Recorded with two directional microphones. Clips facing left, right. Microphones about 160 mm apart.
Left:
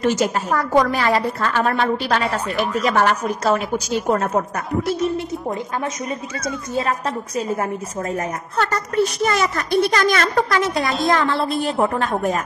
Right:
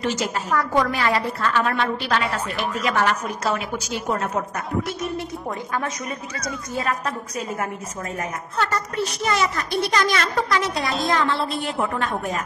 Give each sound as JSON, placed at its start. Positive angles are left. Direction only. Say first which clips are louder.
{"t": 0.0, "sound": "a woman's voice", "louder": "left 6 dB", "side_deg": 45}
{"t": 6.4, "sound": "speech", "louder": "left 3 dB", "side_deg": 25}
{"t": 8.5, "sound": "a woman's voice", "louder": "left 5 dB", "side_deg": 50}